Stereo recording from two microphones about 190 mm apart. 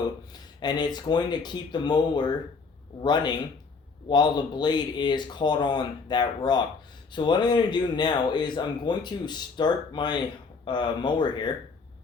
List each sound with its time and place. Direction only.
0.6 s speech: 20° left (ahead or behind)